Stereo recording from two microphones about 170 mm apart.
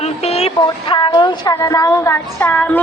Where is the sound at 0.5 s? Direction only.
25° left (ahead or behind).